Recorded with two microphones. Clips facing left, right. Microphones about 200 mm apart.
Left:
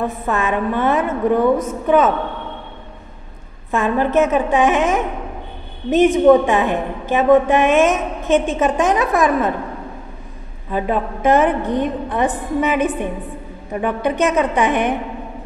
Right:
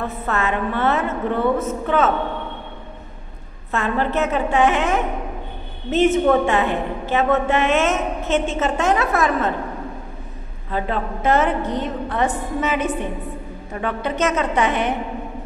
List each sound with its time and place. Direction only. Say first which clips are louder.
0.0 s a woman's voice: left 3 dB; 15° left (ahead or behind)
3.7 s a woman's voice: left 5 dB; 15° left (ahead or behind)
10.7 s a woman's voice: left 4 dB; 15° left (ahead or behind)